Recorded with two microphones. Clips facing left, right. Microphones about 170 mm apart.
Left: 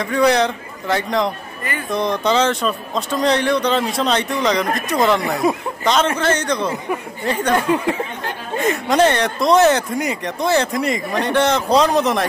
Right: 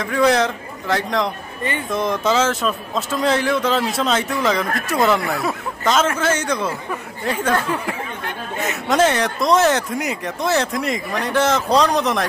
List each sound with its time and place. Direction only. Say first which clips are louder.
0.0 s speech: left 1 dB; centre (ahead or behind)
5.2 s speech: left 4 dB; 20° left (ahead or behind)
6.1 s a man's voice: left 2 dB; 5° right (ahead or behind)
7.5 s speech: left 4 dB; 20° left (ahead or behind)
8.8 s speech: even; centre (ahead or behind)